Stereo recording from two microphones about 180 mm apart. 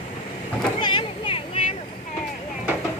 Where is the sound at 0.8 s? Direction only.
30° left (ahead or behind).